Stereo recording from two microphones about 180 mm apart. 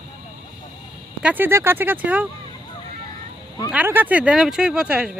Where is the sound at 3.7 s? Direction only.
10° right (ahead or behind).